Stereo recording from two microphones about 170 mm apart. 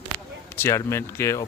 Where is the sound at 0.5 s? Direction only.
15° left (ahead or behind).